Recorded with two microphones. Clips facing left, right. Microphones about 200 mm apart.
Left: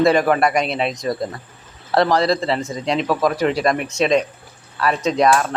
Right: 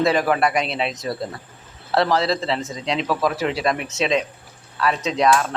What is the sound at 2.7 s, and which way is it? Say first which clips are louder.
Speech: left 3 dB; 45° left (ahead or behind).